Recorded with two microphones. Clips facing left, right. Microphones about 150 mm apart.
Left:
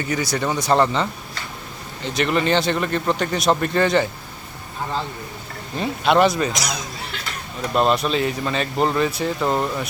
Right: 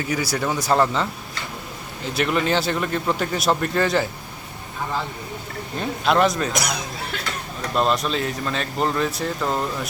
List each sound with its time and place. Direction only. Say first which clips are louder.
0.0 s speech: left 1 dB; 5° right (ahead or behind)
2.0 s speech: left 2 dB; 5° right (ahead or behind)
5.7 s speech: left 2 dB; centre (ahead or behind)
6.5 s speech: right 2 dB; 55° right (ahead or behind)
7.7 s speech: left 2 dB; centre (ahead or behind)